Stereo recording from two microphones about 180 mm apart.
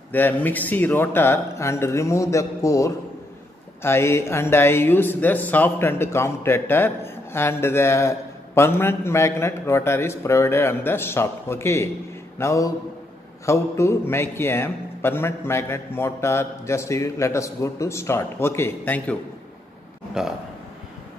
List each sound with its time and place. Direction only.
0.1 s a man's voice: 10° left (ahead or behind)
20.2 s a man's voice: 5° right (ahead or behind)